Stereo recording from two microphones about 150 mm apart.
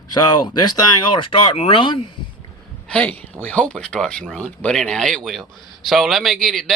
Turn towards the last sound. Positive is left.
turn(degrees=0)  # may be behind; listen again after turning